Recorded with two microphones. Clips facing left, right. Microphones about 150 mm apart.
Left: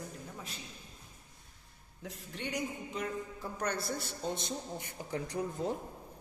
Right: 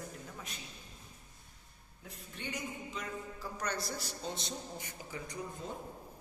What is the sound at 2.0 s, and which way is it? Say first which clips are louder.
Speech: left 4 dB; 85° left.